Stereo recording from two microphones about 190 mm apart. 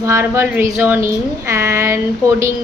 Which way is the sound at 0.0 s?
15° right (ahead or behind).